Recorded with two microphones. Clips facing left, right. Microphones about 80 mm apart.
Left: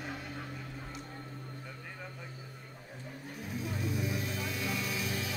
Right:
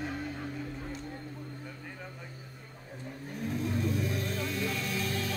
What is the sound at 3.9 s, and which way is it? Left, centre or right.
Music, centre.